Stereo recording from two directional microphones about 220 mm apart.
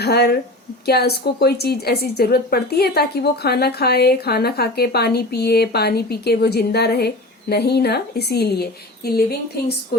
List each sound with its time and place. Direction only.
0.0 s speech: 45° left (ahead or behind)